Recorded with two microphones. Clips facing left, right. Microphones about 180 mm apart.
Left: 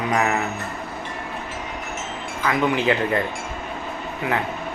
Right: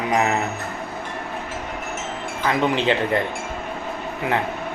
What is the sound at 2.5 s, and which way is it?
Speech, 25° right (ahead or behind).